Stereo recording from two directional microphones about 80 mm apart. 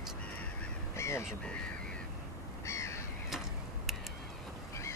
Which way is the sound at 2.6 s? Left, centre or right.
Left.